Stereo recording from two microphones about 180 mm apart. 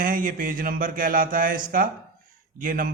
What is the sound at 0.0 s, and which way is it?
A man's voice, 50° right (ahead or behind).